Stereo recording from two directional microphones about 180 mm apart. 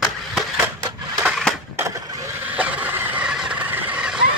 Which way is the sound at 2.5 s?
10° right (ahead or behind).